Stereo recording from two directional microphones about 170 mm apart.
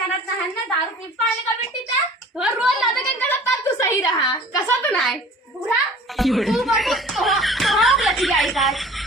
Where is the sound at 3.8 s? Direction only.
20° left (ahead or behind).